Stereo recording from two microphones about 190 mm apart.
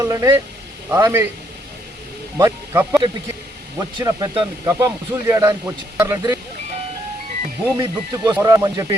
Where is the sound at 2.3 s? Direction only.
15° right (ahead or behind).